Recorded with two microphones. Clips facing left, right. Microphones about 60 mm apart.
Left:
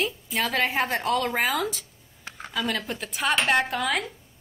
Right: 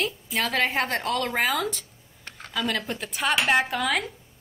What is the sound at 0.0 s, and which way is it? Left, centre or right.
A woman's voice, centre.